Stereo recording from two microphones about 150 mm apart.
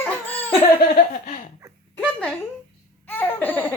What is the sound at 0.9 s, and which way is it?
Laughter, 55° left (ahead or behind).